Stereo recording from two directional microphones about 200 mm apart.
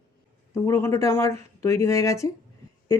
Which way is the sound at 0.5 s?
15° left (ahead or behind).